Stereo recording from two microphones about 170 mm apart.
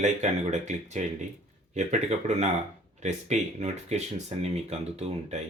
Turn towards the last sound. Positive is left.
turn(degrees=-40)  # may be behind; listen again after turning